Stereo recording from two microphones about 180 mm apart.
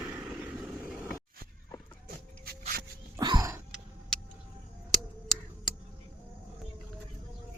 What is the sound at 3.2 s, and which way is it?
Music, 25° right (ahead or behind).